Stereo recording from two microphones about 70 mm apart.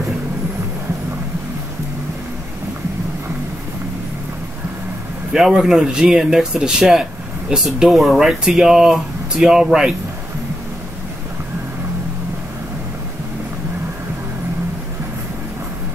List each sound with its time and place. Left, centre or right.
5.3 s speech: centre